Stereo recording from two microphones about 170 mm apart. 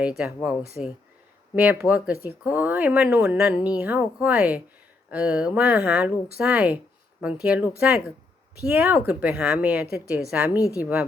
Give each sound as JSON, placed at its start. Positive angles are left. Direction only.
{"t": 0.2, "sound": "speech", "side_deg": -5}
{"t": 10.6, "sound": "speech", "side_deg": 20}